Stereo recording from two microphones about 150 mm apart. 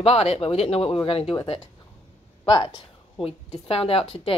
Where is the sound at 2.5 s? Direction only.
35° left (ahead or behind).